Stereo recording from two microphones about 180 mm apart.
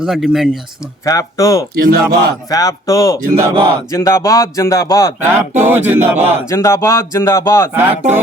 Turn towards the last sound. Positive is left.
turn(degrees=-10)  # may be behind; listen again after turning